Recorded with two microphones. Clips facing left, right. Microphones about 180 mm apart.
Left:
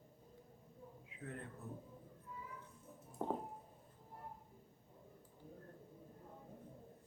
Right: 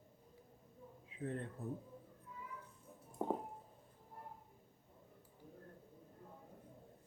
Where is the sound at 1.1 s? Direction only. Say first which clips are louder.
Right 9 dB; 35° right (ahead or behind).